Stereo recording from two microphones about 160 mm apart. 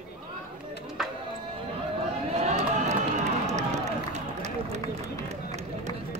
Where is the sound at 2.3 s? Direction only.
45° right (ahead or behind).